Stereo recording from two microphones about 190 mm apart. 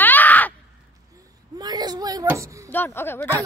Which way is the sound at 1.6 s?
20° right (ahead or behind).